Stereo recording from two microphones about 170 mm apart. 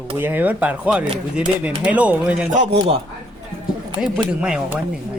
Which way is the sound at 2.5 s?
40° right (ahead or behind).